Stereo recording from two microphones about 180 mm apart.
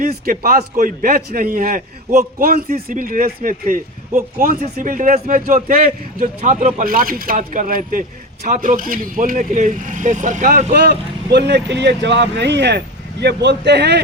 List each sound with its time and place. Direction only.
0.0 s a man's voice: 55° right (ahead or behind)
10.8 s speech: 65° right (ahead or behind)